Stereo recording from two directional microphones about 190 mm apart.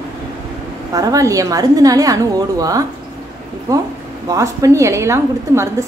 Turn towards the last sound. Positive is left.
turn(degrees=-15)  # may be behind; listen again after turning